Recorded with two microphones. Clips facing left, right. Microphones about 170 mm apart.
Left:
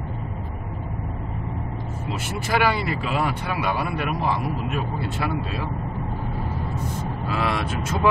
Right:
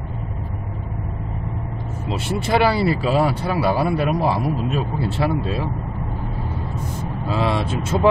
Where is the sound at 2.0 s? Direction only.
30° right (ahead or behind).